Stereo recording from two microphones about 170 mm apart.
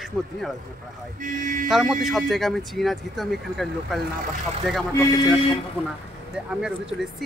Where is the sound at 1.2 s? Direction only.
50° right (ahead or behind).